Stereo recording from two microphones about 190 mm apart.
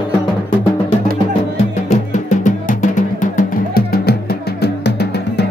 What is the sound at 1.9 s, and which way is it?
Music, 40° left (ahead or behind).